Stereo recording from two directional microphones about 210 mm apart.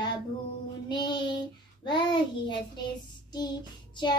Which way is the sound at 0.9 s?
20° left (ahead or behind).